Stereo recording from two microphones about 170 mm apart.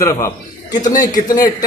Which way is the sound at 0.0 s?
15° left (ahead or behind).